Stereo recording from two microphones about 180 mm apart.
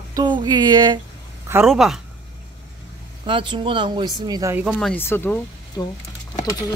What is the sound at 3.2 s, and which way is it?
Speech, 25° right (ahead or behind).